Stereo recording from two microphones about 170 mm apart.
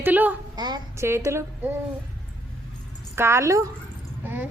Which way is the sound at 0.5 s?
25° right (ahead or behind).